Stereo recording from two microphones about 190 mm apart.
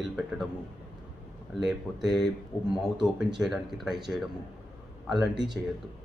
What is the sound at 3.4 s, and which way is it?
Speech, centre (ahead or behind).